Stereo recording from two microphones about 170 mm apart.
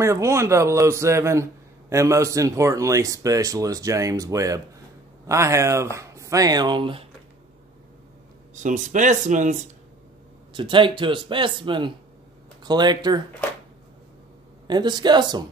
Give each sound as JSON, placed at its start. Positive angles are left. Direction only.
{"t": 0.0, "sound": "a man's voice", "side_deg": -15}
{"t": 8.5, "sound": "speech", "side_deg": -45}
{"t": 10.5, "sound": "speech", "side_deg": -30}
{"t": 14.7, "sound": "speech", "side_deg": -25}